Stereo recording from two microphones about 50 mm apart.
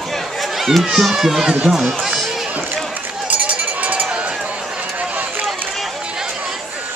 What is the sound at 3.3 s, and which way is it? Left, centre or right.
Run, right.